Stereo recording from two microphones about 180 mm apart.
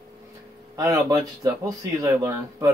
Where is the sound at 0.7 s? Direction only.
20° right (ahead or behind).